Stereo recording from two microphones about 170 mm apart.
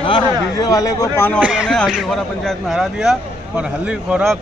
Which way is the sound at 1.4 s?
5° right (ahead or behind).